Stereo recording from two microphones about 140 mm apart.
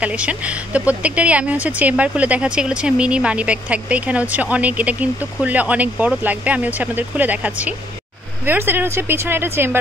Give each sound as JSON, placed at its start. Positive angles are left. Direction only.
{"t": 0.0, "sound": "speech", "side_deg": -10}